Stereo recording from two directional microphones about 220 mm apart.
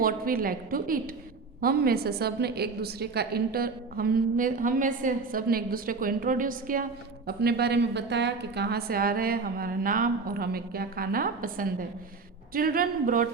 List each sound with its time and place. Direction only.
0.0 s a woman's voice: 40° right (ahead or behind)